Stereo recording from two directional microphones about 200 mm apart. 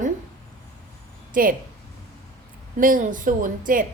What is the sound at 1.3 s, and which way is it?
Speech, 45° right (ahead or behind).